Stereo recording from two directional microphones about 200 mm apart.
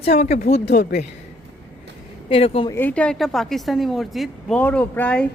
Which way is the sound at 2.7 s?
10° left (ahead or behind).